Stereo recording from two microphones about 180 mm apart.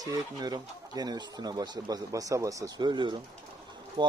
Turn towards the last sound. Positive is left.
turn(degrees=-25)  # may be behind; listen again after turning